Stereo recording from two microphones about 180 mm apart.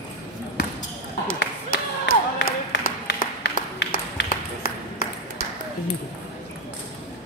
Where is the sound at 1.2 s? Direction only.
55° left (ahead or behind).